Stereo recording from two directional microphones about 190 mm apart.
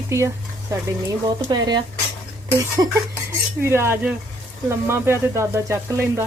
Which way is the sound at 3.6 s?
15° right (ahead or behind).